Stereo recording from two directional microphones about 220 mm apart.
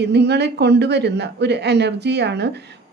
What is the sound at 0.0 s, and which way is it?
A woman's voice, 50° right (ahead or behind).